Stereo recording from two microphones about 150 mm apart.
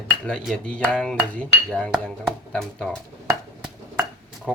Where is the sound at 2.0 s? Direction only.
5° left (ahead or behind).